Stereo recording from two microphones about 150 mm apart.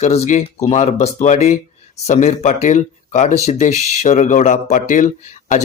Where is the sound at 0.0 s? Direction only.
50° left (ahead or behind).